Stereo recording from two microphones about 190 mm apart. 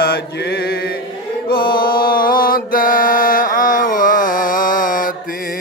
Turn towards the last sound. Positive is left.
turn(degrees=45)  # may be behind; listen again after turning